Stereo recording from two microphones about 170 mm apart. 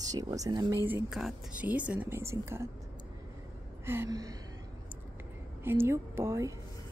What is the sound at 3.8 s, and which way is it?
Speech, 15° right (ahead or behind).